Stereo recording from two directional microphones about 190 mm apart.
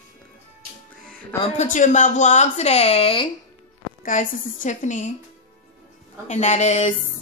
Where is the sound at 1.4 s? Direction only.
40° left (ahead or behind).